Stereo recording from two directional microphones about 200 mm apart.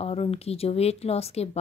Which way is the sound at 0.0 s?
30° left (ahead or behind).